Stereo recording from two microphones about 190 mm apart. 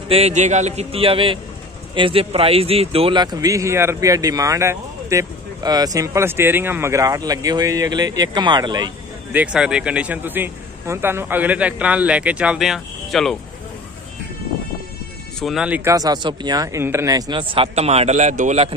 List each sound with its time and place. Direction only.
0.1 s a man's voice: 35° right (ahead or behind)
9.3 s a man's voice: 5° right (ahead or behind)
15.4 s a man's voice: 5° right (ahead or behind); by 18.8 s 35° right (ahead or behind)